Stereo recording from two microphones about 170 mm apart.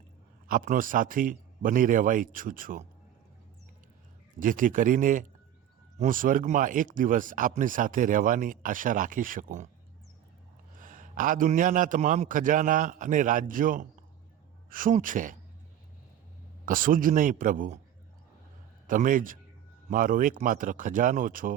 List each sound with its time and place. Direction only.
0.4 s speech: 55° right (ahead or behind)
4.4 s speech: 50° right (ahead or behind)
10.8 s speech: 50° right (ahead or behind)
16.6 s speech: 55° right (ahead or behind)
18.9 s speech: 50° right (ahead or behind)